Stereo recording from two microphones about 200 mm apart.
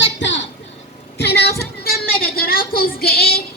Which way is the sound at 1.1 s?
55° left (ahead or behind).